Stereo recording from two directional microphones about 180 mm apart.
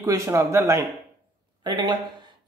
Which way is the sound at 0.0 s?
15° right (ahead or behind).